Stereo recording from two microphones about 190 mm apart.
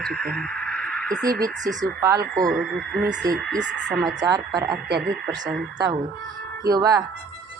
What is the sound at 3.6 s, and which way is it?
Speech, 65° right (ahead or behind).